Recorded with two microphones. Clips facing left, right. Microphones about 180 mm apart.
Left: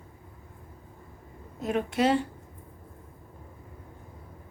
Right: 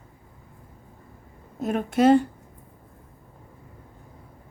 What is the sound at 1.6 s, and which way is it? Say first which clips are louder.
Speech: right 5 dB; 50° right (ahead or behind).